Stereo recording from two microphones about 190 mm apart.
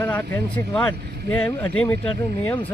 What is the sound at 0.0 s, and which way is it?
A man's voice, 10° left (ahead or behind).